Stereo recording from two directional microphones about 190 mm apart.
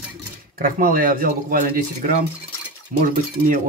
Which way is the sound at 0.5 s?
50° right (ahead or behind).